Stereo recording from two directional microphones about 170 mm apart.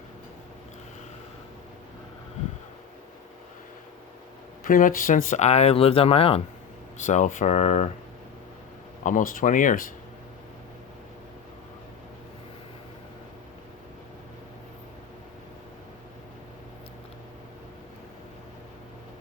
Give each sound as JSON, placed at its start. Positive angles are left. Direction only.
{"t": 4.6, "sound": "speech", "side_deg": 55}
{"t": 7.0, "sound": "speech", "side_deg": 45}
{"t": 9.0, "sound": "speech", "side_deg": 50}